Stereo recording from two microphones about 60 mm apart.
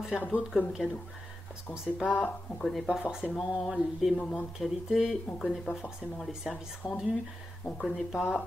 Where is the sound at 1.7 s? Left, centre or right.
Centre.